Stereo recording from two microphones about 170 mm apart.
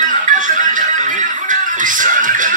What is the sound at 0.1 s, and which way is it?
Music, 50° right (ahead or behind).